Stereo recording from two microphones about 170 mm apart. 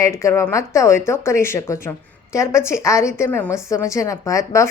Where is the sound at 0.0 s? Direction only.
15° left (ahead or behind).